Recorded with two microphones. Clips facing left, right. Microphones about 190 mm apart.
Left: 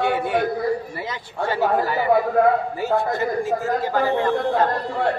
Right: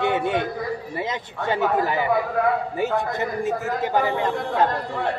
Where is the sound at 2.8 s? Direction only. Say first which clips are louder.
Left 2 dB; 20° right (ahead or behind).